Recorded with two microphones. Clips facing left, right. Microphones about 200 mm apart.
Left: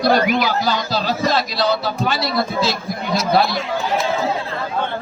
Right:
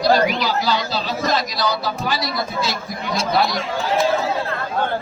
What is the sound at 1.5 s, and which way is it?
A man's voice, 25° left (ahead or behind).